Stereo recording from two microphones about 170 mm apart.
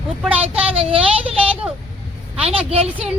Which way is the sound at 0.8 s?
35° right (ahead or behind).